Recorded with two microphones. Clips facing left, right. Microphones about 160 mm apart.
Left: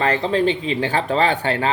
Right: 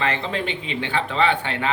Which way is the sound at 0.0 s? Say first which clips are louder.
Left 7 dB; 40° left (ahead or behind).